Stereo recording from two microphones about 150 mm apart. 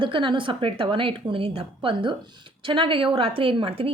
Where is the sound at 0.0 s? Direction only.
35° right (ahead or behind).